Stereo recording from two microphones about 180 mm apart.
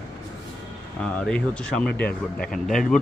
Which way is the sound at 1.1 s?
5° left (ahead or behind).